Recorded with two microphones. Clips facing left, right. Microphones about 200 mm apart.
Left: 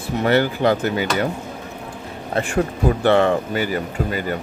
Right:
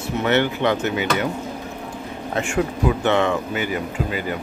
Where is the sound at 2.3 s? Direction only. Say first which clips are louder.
Left 2 dB; 35° left (ahead or behind).